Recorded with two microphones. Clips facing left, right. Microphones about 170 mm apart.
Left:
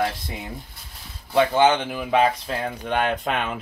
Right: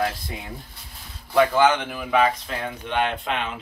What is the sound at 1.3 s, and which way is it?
Speech, 25° left (ahead or behind).